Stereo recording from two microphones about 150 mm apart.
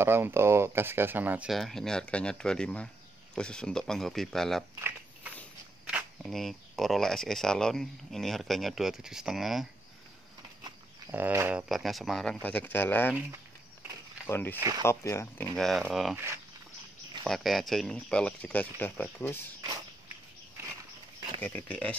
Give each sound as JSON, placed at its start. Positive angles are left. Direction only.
{"t": 0.0, "sound": "speech", "side_deg": -15}
{"t": 1.5, "sound": "speech", "side_deg": 0}
{"t": 5.9, "sound": "speech", "side_deg": -5}
{"t": 11.1, "sound": "speech", "side_deg": -15}
{"t": 11.7, "sound": "speech", "side_deg": 0}
{"t": 14.2, "sound": "speech", "side_deg": 15}
{"t": 15.6, "sound": "speech", "side_deg": 0}
{"t": 17.3, "sound": "speech", "side_deg": 0}
{"t": 21.4, "sound": "speech", "side_deg": 10}